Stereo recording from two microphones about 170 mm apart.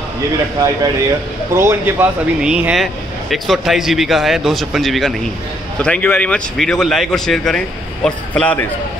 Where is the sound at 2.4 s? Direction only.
5° right (ahead or behind).